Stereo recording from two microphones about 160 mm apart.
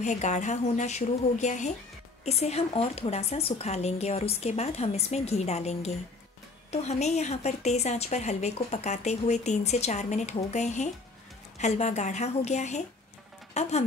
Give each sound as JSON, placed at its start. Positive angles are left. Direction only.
{"t": 0.0, "sound": "a woman's voice", "side_deg": 50}